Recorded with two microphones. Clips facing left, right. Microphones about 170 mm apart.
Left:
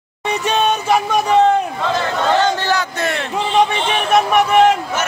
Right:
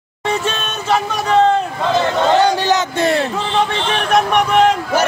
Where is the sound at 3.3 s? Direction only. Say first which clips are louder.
Left 2 dB; 15° left (ahead or behind).